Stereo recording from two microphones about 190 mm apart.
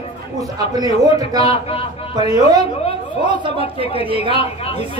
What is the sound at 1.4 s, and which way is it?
Speech, 30° left (ahead or behind).